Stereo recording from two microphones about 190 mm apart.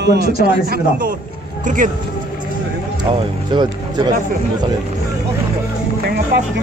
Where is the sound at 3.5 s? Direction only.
25° right (ahead or behind).